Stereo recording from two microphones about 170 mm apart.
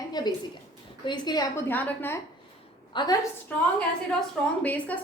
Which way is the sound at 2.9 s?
25° left (ahead or behind).